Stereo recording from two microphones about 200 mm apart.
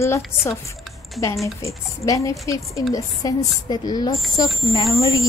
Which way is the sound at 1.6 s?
15° left (ahead or behind).